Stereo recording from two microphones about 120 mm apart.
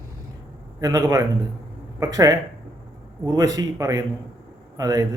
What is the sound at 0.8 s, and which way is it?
A man's voice, 30° right (ahead or behind).